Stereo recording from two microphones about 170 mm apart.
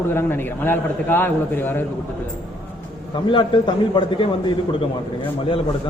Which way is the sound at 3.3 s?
30° left (ahead or behind).